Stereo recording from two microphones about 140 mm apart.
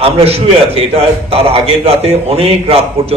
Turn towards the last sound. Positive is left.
turn(degrees=-45)  # may be behind; listen again after turning